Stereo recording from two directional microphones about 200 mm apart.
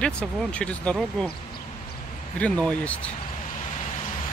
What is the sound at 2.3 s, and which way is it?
Speech, 5° left (ahead or behind).